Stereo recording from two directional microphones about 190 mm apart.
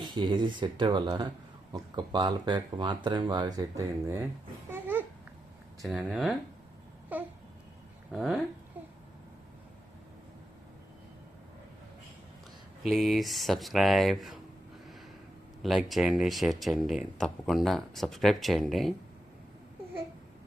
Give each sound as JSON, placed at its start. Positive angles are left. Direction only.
{"t": 0.0, "sound": "speech", "side_deg": -25}
{"t": 4.7, "sound": "babbling", "side_deg": -10}
{"t": 5.8, "sound": "speech", "side_deg": -5}
{"t": 7.1, "sound": "babbling", "side_deg": -10}
{"t": 8.1, "sound": "speech", "side_deg": 0}
{"t": 12.9, "sound": "speech", "side_deg": 0}
{"t": 15.6, "sound": "speech", "side_deg": 0}